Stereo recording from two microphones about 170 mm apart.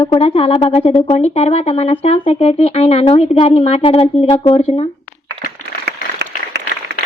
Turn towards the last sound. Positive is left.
turn(degrees=-75)  # may be behind; listen again after turning